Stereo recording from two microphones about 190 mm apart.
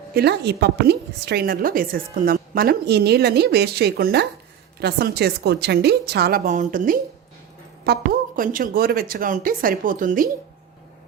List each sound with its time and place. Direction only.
0.1 s a woman's voice: 60° right (ahead or behind)